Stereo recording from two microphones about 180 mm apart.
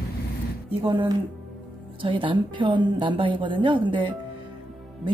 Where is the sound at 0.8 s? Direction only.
25° right (ahead or behind).